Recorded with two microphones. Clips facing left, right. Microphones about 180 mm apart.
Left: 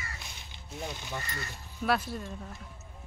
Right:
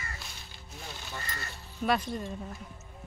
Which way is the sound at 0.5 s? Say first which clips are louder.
Left 7 dB; 20° left (ahead or behind).